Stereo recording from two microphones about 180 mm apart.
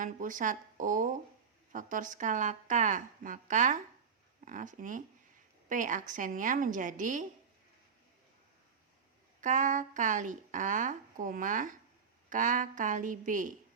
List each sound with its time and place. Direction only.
0.0 s a woman's voice: 45° right (ahead or behind)
9.4 s a woman's voice: 45° right (ahead or behind)